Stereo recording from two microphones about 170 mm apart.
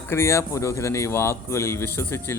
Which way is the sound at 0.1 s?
15° left (ahead or behind).